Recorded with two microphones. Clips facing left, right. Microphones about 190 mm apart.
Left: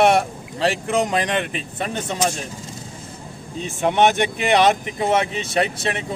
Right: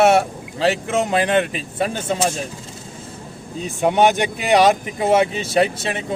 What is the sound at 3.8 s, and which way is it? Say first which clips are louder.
Speech: right 1 dB; 10° right (ahead or behind).